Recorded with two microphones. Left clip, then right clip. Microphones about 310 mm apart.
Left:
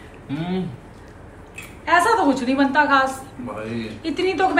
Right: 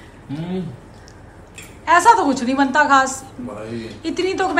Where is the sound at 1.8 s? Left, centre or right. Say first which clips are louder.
Right 4 dB; centre.